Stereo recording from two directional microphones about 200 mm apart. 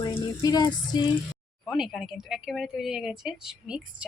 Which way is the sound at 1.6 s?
Centre (ahead or behind).